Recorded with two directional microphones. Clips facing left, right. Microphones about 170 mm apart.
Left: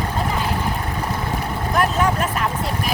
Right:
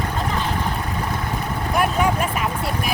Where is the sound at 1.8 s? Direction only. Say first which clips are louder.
Even; 10° right (ahead or behind).